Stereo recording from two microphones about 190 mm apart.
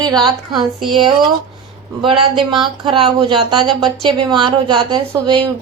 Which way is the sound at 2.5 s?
25° right (ahead or behind).